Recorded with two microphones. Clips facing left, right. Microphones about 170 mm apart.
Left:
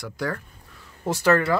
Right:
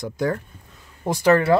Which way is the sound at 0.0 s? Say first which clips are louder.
Right 5 dB; 20° right (ahead or behind).